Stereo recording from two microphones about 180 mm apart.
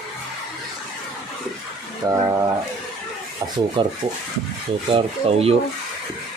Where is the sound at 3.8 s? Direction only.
25° right (ahead or behind).